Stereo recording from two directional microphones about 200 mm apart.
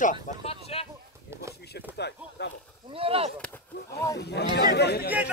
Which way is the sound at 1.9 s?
60° left (ahead or behind).